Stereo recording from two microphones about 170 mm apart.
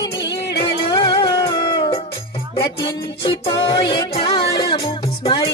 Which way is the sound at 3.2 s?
35° left (ahead or behind).